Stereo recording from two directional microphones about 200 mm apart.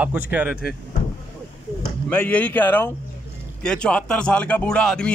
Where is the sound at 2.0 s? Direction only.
5° left (ahead or behind).